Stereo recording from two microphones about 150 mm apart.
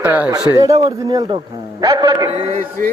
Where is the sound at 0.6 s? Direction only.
25° right (ahead or behind).